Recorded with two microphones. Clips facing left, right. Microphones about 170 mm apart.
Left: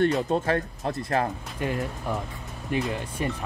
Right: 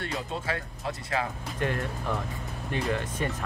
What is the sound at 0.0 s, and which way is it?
Speech, 45° left (ahead or behind).